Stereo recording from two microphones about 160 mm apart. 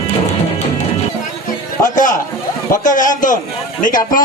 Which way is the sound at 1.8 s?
55° left (ahead or behind).